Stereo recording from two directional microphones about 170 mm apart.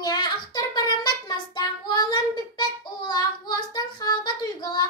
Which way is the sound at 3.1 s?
25° left (ahead or behind).